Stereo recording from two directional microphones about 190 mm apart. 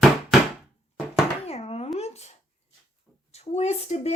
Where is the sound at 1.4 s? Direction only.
30° left (ahead or behind).